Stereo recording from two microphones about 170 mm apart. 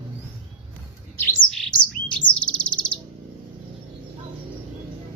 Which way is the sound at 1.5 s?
Centre (ahead or behind).